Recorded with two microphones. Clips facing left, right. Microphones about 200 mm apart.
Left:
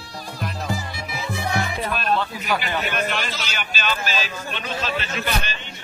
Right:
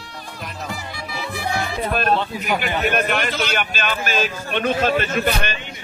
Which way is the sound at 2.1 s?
20° right (ahead or behind).